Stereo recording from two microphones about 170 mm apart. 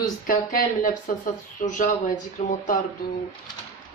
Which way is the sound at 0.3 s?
55° left (ahead or behind).